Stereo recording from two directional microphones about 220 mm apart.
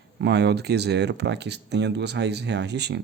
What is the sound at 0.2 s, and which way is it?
Speech, 50° right (ahead or behind).